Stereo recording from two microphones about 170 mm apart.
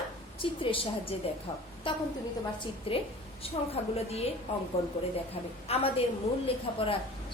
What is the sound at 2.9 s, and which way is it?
A woman's voice, 35° left (ahead or behind).